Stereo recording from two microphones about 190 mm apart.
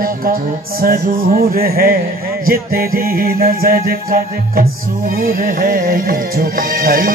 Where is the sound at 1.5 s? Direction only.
50° right (ahead or behind).